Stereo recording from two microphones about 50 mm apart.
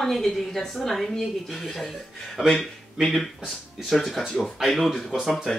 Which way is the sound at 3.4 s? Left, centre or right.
Centre.